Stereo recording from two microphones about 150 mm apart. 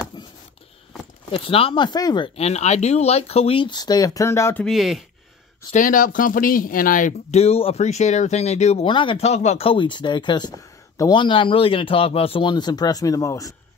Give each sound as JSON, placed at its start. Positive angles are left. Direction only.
{"t": 0.2, "sound": "a sound", "side_deg": 30}
{"t": 1.3, "sound": "speech", "side_deg": 40}
{"t": 4.6, "sound": "speech", "side_deg": 0}
{"t": 5.7, "sound": "speech", "side_deg": 60}